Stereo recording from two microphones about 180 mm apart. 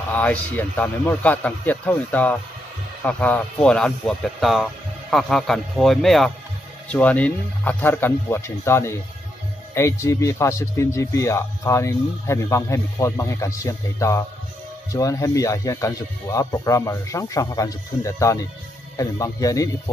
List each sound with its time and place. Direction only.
0.1 s speech: 10° left (ahead or behind)